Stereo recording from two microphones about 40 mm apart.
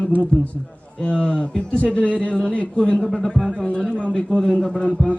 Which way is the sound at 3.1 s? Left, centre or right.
Centre.